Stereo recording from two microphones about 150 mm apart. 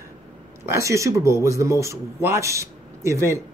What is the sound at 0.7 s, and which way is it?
Speech, 20° right (ahead or behind).